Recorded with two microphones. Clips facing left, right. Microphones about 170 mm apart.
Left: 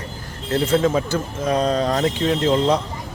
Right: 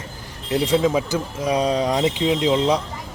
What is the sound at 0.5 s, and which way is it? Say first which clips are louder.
Speech: even; 15° right (ahead or behind).